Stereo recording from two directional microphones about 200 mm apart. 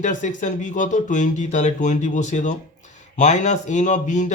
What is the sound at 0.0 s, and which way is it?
Speech, 40° left (ahead or behind).